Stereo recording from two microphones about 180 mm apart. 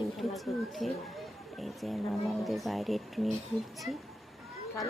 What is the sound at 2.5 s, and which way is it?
Speech, centre (ahead or behind).